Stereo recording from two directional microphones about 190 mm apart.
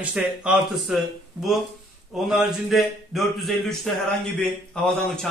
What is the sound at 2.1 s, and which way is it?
Speech, centre (ahead or behind).